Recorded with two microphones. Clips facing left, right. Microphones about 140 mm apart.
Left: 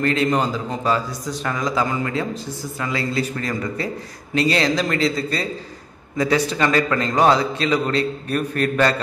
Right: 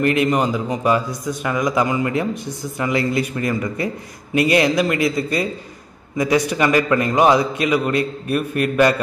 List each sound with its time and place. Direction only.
0.0 s a man's voice: 15° right (ahead or behind)